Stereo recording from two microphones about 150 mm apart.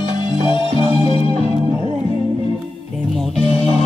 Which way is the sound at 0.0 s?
30° left (ahead or behind).